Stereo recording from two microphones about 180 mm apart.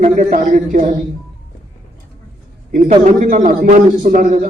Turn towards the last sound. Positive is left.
turn(degrees=-45)  # may be behind; listen again after turning